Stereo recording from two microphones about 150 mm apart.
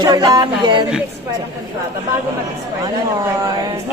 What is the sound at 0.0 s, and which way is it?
Speech, 25° right (ahead or behind).